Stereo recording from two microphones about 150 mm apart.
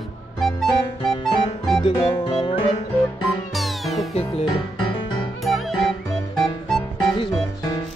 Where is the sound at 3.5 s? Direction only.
Centre (ahead or behind).